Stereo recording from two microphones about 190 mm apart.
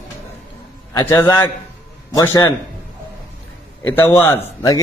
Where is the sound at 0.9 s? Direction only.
15° left (ahead or behind).